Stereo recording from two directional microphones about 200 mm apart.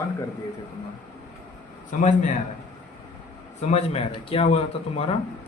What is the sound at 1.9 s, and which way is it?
Speech, 40° left (ahead or behind).